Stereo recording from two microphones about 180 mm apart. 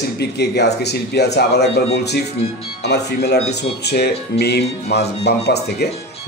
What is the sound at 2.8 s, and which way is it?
A man's voice, 70° left (ahead or behind).